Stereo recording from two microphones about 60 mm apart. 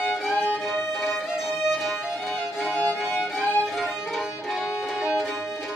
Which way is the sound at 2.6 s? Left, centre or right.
Centre.